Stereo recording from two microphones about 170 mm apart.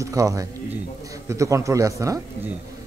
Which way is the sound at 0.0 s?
20° right (ahead or behind).